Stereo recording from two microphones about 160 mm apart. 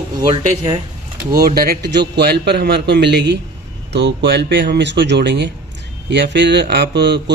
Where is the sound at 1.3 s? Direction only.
70° right (ahead or behind).